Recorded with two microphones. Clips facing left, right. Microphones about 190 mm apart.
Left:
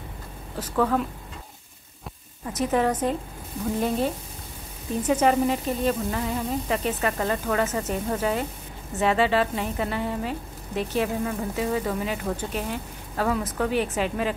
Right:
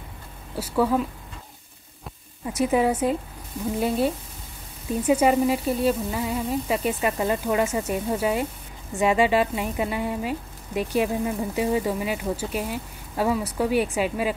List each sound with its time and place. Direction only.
0.6 s speech: 10° right (ahead or behind)
2.4 s speech: 10° right (ahead or behind)
5.0 s speech: 10° right (ahead or behind)